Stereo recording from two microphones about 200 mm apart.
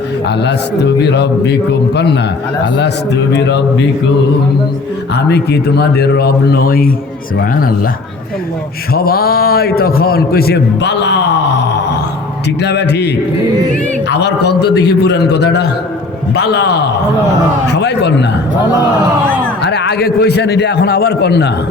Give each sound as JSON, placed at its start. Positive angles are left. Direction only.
{"t": 1.0, "sound": "a man's voice", "side_deg": 55}
{"t": 2.7, "sound": "a man's voice", "side_deg": 60}
{"t": 5.1, "sound": "a man's voice", "side_deg": 55}
{"t": 9.0, "sound": "a man's voice", "side_deg": 50}
{"t": 19.6, "sound": "a man's voice", "side_deg": 60}